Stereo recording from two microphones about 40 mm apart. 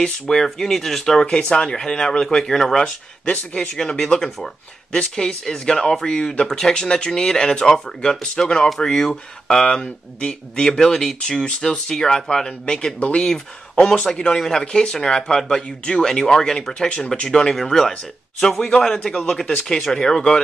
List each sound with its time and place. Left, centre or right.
0.0 s speech: centre
1.2 s speech: left
5.8 s speech: centre
6.0 s speech: left
14.0 s speech: left
14.3 s speech: centre
17.5 s speech: centre